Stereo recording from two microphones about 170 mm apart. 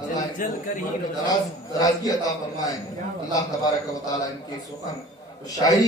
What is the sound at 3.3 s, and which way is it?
Speech, 20° left (ahead or behind).